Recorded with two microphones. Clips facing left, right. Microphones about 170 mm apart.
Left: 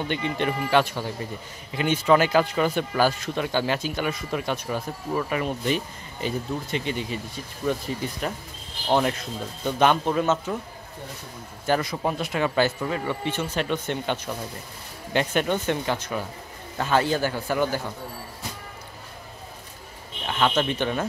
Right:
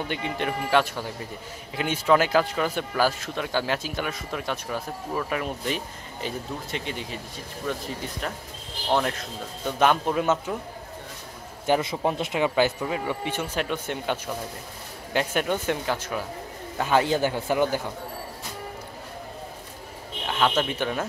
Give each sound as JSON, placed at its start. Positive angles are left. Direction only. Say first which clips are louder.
{"t": 0.1, "sound": "speech", "louder": "left 2 dB", "side_deg": -5}
{"t": 11.6, "sound": "speech", "louder": "right 1 dB", "side_deg": -20}
{"t": 20.2, "sound": "speech", "louder": "left 1 dB", "side_deg": -5}